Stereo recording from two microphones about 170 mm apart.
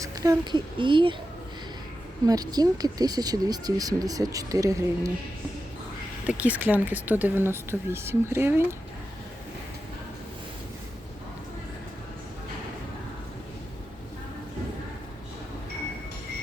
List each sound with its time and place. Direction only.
0.0 s speech: 20° right (ahead or behind)
2.2 s speech: 20° right (ahead or behind)
6.2 s speech: 10° right (ahead or behind)